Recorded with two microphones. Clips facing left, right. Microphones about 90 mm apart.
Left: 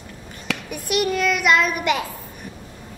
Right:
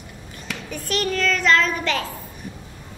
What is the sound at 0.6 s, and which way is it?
A woman's voice, 10° left (ahead or behind).